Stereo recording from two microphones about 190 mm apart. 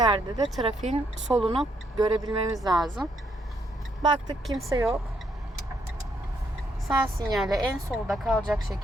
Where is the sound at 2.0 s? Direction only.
20° right (ahead or behind).